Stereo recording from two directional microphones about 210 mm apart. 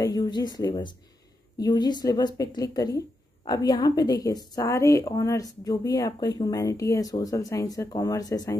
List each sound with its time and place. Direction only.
0.0 s a woman's voice: 20° left (ahead or behind)